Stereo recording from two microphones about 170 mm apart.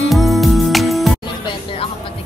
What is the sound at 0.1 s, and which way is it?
Music, centre (ahead or behind).